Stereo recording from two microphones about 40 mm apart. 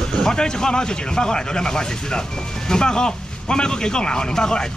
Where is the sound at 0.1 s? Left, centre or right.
Centre.